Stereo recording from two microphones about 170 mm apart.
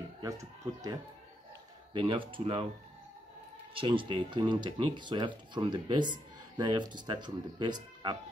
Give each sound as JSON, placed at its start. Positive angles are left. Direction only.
{"t": 0.2, "sound": "speech", "side_deg": -20}
{"t": 2.0, "sound": "speech", "side_deg": -30}
{"t": 3.7, "sound": "speech", "side_deg": -30}